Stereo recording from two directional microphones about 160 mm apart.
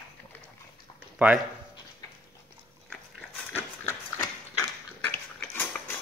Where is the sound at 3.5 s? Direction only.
15° left (ahead or behind).